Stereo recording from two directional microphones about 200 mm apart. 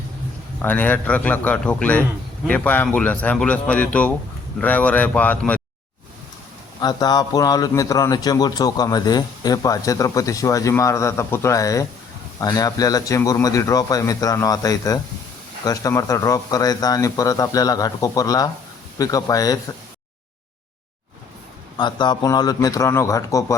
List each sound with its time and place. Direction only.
0.6 s a man's voice: 10° left (ahead or behind)
6.7 s a man's voice: 20° left (ahead or behind)
21.8 s a man's voice: 20° left (ahead or behind)